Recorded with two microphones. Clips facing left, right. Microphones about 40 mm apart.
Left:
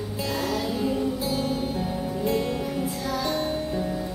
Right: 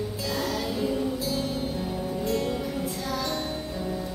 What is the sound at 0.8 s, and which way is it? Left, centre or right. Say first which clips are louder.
Music: left 2 dB; centre.